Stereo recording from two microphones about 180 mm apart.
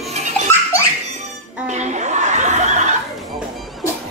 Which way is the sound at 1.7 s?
40° right (ahead or behind).